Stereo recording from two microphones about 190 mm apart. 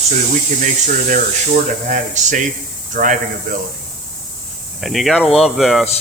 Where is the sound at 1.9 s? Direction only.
40° right (ahead or behind).